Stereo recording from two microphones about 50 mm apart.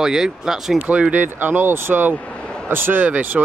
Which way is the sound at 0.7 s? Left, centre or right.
Right.